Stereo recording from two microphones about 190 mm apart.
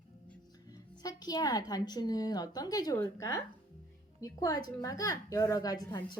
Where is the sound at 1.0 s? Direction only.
20° left (ahead or behind).